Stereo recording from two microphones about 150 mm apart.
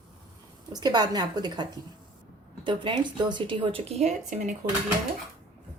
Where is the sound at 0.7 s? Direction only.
30° right (ahead or behind).